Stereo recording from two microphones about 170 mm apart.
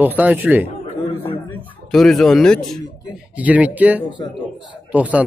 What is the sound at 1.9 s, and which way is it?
Speech, centre (ahead or behind).